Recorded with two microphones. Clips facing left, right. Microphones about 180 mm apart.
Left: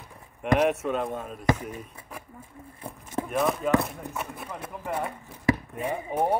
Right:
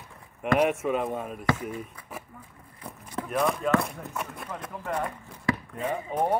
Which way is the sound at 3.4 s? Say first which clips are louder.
Left 1 dB; centre (ahead or behind).